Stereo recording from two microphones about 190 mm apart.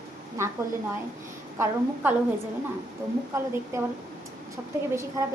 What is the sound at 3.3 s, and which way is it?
Speech, 15° right (ahead or behind).